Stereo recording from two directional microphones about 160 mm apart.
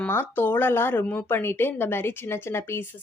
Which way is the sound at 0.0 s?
15° left (ahead or behind).